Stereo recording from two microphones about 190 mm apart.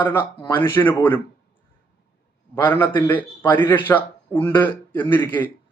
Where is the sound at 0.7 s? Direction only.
10° left (ahead or behind).